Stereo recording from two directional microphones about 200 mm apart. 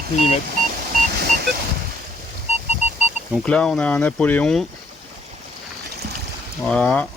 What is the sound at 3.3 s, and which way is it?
Speech, 5° left (ahead or behind).